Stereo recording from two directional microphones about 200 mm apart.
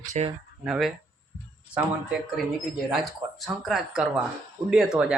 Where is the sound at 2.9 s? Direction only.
Centre (ahead or behind).